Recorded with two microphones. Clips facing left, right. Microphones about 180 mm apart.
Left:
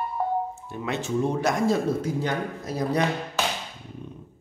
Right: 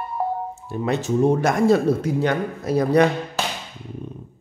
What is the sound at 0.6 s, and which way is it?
Speech, 35° right (ahead or behind).